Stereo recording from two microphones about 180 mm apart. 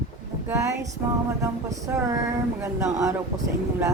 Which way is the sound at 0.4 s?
15° right (ahead or behind).